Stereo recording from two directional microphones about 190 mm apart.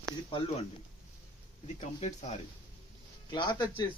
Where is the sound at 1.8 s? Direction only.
35° left (ahead or behind).